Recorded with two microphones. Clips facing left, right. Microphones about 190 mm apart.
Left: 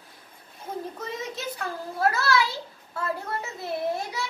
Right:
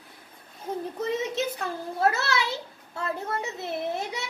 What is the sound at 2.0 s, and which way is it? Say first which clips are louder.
A child's voice: left 2 dB; 25° right (ahead or behind).